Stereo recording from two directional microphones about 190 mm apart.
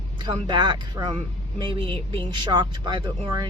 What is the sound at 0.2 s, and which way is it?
Speech, 25° right (ahead or behind).